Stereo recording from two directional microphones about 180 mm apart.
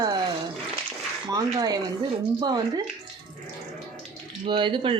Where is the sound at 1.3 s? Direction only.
20° right (ahead or behind).